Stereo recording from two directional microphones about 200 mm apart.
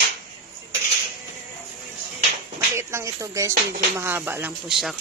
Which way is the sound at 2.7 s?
15° right (ahead or behind).